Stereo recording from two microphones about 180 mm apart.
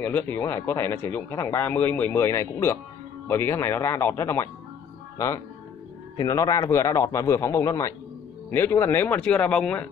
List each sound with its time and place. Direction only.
0.0 s speech: 10° left (ahead or behind)
6.1 s speech: 20° left (ahead or behind)